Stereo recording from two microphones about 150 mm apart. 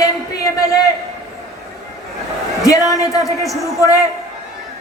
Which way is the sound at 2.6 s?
20° left (ahead or behind).